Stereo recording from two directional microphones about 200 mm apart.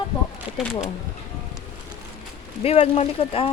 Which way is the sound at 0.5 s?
Centre (ahead or behind).